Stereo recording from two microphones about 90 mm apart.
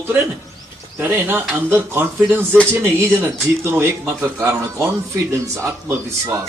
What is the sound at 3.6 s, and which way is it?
Speech, 25° right (ahead or behind).